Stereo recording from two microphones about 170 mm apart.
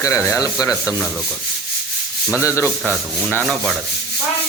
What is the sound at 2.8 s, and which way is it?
Rub, 5° left (ahead or behind).